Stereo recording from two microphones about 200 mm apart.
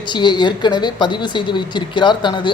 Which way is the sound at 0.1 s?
25° left (ahead or behind).